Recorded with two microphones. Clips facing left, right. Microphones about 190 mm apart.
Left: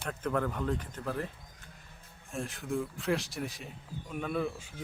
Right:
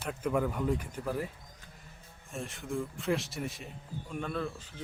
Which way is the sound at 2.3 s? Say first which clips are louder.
Left 2 dB; centre (ahead or behind).